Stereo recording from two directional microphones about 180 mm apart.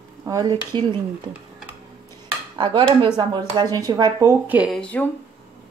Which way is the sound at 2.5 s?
25° right (ahead or behind).